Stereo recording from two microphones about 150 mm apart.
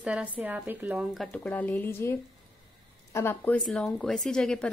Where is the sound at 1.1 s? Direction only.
Centre (ahead or behind).